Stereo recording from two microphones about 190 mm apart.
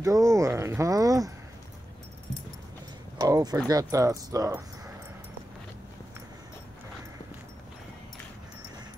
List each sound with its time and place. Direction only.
0.0 s speech: 15° right (ahead or behind)
3.2 s speech: 20° right (ahead or behind)